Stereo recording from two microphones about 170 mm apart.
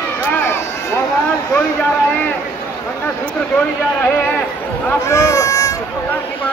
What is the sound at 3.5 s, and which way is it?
Speech, 10° left (ahead or behind).